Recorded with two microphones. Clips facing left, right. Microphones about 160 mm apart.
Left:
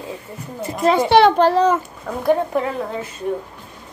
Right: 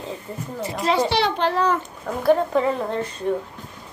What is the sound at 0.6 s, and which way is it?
Speech, 50° left (ahead or behind).